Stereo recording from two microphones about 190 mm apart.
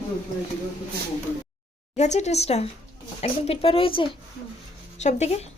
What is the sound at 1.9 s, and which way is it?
Speech, 35° left (ahead or behind).